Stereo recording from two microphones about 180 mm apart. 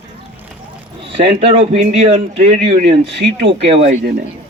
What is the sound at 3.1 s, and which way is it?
Speech, 70° right (ahead or behind).